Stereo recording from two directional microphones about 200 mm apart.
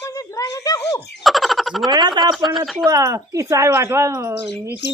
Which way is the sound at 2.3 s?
Centre (ahead or behind).